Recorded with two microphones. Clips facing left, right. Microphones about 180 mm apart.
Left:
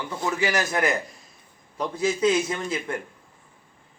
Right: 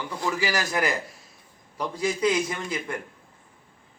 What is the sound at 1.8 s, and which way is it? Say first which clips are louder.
Speech: left 2 dB; 25° left (ahead or behind).